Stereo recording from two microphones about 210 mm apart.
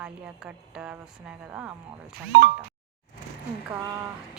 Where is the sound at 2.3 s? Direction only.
50° right (ahead or behind).